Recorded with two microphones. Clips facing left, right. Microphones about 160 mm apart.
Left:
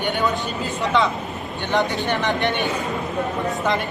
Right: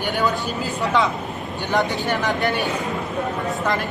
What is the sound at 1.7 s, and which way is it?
Speech, 5° right (ahead or behind).